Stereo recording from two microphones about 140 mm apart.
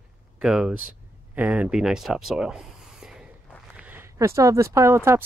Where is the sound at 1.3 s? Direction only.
10° right (ahead or behind).